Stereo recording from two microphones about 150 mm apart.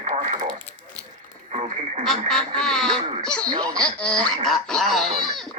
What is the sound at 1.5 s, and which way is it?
Radio, 50° right (ahead or behind).